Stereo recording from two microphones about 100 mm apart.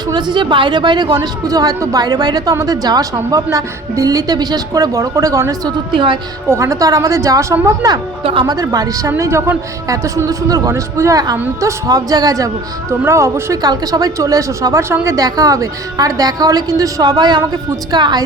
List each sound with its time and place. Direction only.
0.1 s a woman's voice: 50° right (ahead or behind); by 5.7 s 35° right (ahead or behind)
5.9 s a woman's voice: 55° right (ahead or behind)
6.5 s a woman's voice: 30° right (ahead or behind)
8.2 s a woman's voice: 60° right (ahead or behind)
8.4 s a woman's voice: 35° right (ahead or behind)
13.6 s a woman's voice: 40° right (ahead or behind)